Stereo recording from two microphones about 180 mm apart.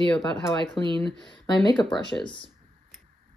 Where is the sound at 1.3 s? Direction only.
25° left (ahead or behind).